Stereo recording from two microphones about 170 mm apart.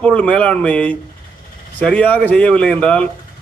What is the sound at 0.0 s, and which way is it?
A man's voice, 5° left (ahead or behind).